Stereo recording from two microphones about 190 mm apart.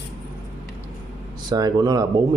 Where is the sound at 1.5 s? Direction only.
20° right (ahead or behind).